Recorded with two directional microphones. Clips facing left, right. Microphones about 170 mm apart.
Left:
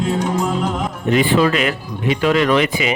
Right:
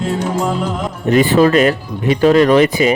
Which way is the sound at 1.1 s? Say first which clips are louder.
Right 4 dB; 40° right (ahead or behind).